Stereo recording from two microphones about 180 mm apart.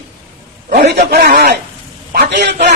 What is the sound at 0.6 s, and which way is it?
Speech, 45° right (ahead or behind).